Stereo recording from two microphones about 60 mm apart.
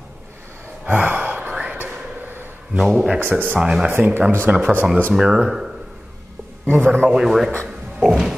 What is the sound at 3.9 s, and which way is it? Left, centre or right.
Speech, right.